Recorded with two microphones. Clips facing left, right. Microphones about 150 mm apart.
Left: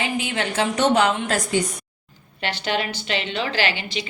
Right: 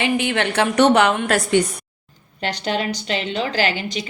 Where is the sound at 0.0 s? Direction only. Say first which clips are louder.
Right 5 dB; 65° right (ahead or behind).